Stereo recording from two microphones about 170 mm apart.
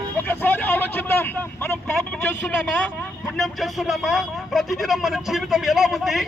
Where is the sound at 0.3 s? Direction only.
10° left (ahead or behind).